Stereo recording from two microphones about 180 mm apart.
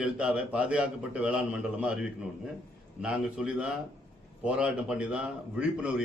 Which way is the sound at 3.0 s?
5° right (ahead or behind).